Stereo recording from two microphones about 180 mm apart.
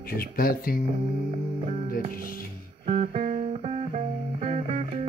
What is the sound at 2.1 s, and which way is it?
Speech, 50° left (ahead or behind).